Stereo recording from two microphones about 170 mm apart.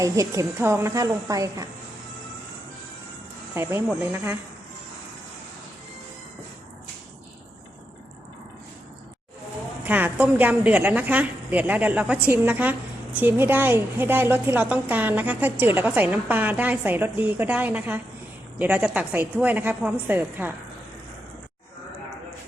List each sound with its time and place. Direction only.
0.0 s a woman's voice: 20° right (ahead or behind)
3.5 s a woman's voice: 15° right (ahead or behind)
9.8 s a woman's voice: 10° right (ahead or behind)